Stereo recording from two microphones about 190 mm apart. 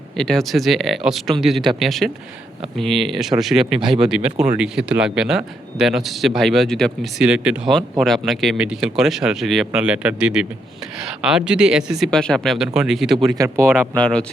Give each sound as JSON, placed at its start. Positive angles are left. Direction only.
{"t": 0.2, "sound": "speech", "side_deg": 0}
{"t": 13.1, "sound": "speech", "side_deg": -20}
{"t": 13.7, "sound": "speech", "side_deg": 5}